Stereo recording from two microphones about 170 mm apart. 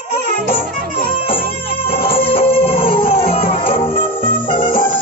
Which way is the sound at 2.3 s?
35° left (ahead or behind).